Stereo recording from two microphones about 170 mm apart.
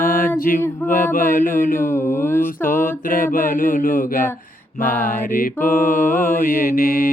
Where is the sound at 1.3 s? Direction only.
50° left (ahead or behind).